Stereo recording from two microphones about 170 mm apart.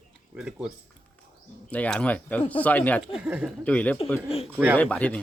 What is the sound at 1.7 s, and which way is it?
Speech, 10° left (ahead or behind).